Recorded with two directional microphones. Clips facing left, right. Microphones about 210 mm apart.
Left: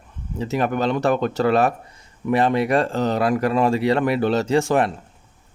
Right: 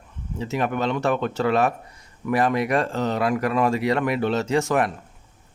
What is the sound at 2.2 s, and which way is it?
Speech, 25° left (ahead or behind).